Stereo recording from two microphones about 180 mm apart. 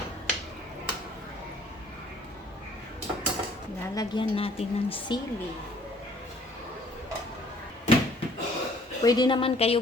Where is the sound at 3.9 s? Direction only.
25° left (ahead or behind).